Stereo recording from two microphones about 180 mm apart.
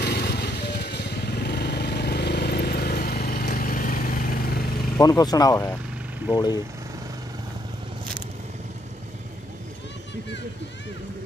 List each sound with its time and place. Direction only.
0.0 s vehicle: 65° left (ahead or behind)
4.9 s speech: 20° left (ahead or behind)